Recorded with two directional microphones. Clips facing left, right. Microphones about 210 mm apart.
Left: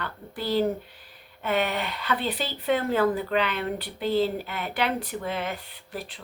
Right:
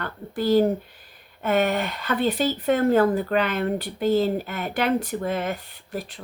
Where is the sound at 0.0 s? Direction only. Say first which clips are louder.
Right 6 dB; 45° right (ahead or behind).